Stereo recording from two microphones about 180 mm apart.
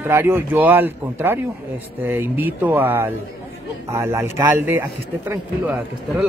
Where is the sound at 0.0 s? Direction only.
15° right (ahead or behind).